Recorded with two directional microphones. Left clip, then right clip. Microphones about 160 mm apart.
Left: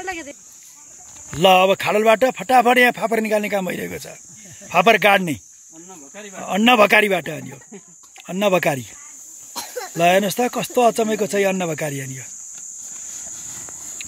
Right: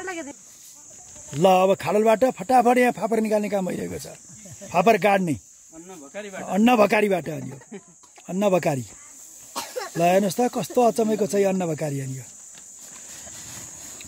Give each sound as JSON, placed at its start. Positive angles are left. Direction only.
{"t": 0.1, "sound": "speech", "side_deg": -90}
{"t": 1.4, "sound": "speech", "side_deg": -5}
{"t": 5.9, "sound": "speech", "side_deg": 15}
{"t": 6.4, "sound": "speech", "side_deg": 0}
{"t": 9.5, "sound": "cricket", "side_deg": 45}
{"t": 9.9, "sound": "speech", "side_deg": 0}